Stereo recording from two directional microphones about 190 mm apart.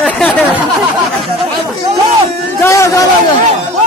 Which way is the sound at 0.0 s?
5° left (ahead or behind).